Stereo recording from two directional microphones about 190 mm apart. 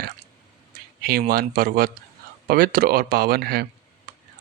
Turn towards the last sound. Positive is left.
turn(degrees=-55)  # may be behind; listen again after turning